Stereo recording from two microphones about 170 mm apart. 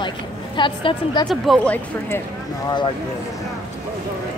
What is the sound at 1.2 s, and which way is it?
Speech, centre (ahead or behind).